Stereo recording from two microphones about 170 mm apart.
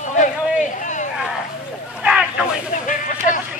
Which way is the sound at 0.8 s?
45° left (ahead or behind).